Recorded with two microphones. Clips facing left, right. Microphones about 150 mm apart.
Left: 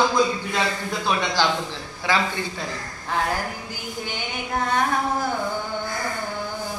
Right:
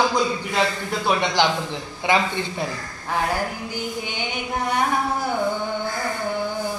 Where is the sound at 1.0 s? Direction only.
15° right (ahead or behind).